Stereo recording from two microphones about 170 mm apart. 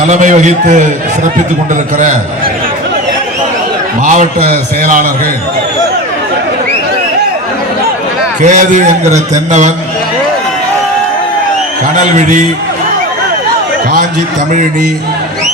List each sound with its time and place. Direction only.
0.0 s a man's voice: 45° right (ahead or behind)
4.0 s a man's voice: 50° right (ahead or behind)
8.4 s a man's voice: 45° right (ahead or behind)
11.9 s a man's voice: 45° right (ahead or behind)